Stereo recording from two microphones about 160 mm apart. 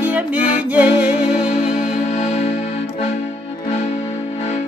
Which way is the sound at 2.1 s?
45° left (ahead or behind).